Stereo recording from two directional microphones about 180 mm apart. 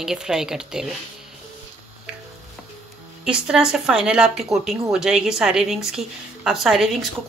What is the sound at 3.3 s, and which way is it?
Speech, 5° right (ahead or behind).